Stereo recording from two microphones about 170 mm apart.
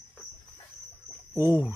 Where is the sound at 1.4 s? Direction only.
15° right (ahead or behind).